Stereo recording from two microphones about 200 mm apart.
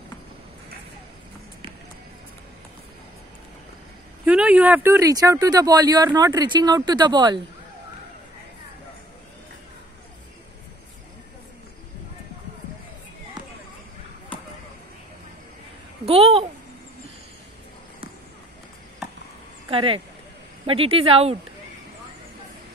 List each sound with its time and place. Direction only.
4.3 s speech: 5° right (ahead or behind); by 7.3 s 20° right (ahead or behind)
16.1 s a sound: 30° right (ahead or behind)
19.7 s speech: 25° right (ahead or behind)